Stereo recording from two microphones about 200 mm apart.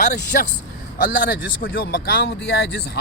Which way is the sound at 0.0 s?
40° left (ahead or behind).